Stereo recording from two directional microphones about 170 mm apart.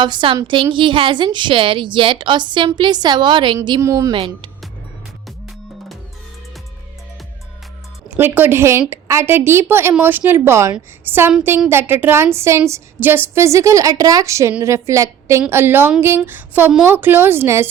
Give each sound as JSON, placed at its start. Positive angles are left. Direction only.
{"t": 0.0, "sound": "a woman's voice", "side_deg": -30}
{"t": 8.1, "sound": "a woman's voice", "side_deg": -10}